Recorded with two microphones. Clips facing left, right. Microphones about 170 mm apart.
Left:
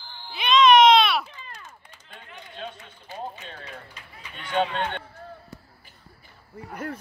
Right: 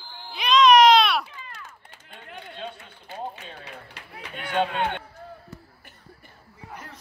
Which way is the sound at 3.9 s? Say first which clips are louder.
Right 5 dB; 65° right (ahead or behind).